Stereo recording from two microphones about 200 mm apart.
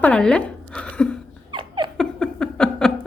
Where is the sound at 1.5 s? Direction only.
25° right (ahead or behind).